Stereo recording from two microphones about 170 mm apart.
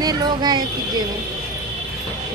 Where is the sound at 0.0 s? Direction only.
25° right (ahead or behind).